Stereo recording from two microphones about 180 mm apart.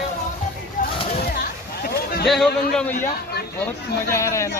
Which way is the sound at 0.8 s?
45° left (ahead or behind).